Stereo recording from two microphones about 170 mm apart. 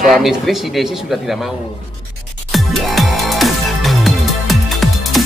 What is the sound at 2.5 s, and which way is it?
Music, centre (ahead or behind).